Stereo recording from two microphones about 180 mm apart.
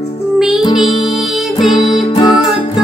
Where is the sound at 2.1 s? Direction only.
25° left (ahead or behind).